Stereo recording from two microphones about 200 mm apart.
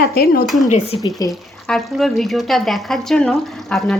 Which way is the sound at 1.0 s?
20° left (ahead or behind).